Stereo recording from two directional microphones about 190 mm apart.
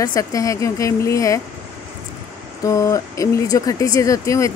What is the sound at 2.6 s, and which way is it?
Speech, 15° left (ahead or behind).